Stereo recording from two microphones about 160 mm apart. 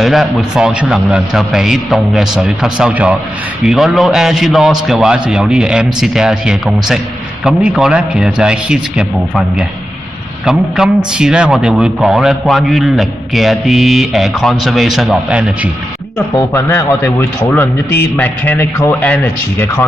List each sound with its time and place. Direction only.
0.0 s a man's voice: centre (ahead or behind)
16.3 s speech: 15° left (ahead or behind)